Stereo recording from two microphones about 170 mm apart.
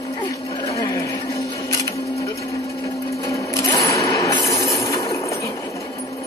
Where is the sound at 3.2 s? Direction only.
20° left (ahead or behind).